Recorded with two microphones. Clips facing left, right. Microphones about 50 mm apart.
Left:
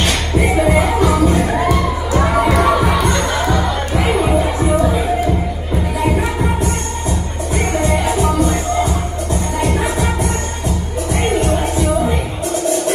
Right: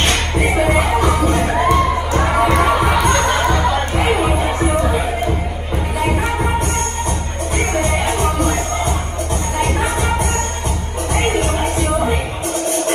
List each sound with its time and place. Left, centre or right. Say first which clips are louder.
0.0 s music: left 1 dB; right
1.7 s crowd: right 2 dB; right
2.3 s music: even; right
7.7 s music: left 3 dB; right
11.1 s music: left 1 dB; right